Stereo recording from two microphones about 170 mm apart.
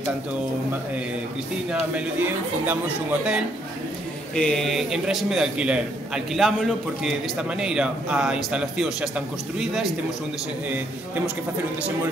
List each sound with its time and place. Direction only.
1.7 s speech: 10° right (ahead or behind)
4.4 s a man's voice: 5° left (ahead or behind)